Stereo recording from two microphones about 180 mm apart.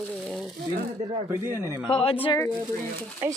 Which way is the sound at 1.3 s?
15° right (ahead or behind).